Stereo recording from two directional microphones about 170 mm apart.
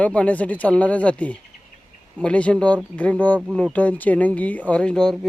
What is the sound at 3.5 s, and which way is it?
Speech, centre (ahead or behind).